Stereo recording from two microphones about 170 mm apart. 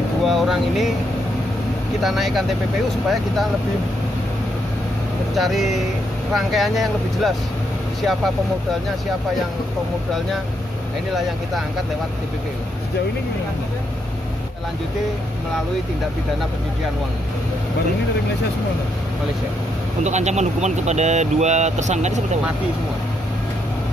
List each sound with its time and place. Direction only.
0.2 s speech: centre (ahead or behind)
2.0 s speech: centre (ahead or behind)
5.3 s speech: centre (ahead or behind)
20.0 s speech: 45° right (ahead or behind)